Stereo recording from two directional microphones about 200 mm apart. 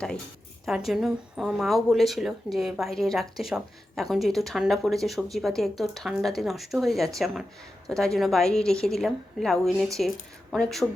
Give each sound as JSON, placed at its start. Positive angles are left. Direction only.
{"t": 0.9, "sound": "speech", "side_deg": 0}